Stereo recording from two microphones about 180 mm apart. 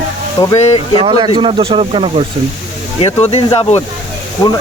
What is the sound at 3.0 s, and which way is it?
Speech, 35° left (ahead or behind).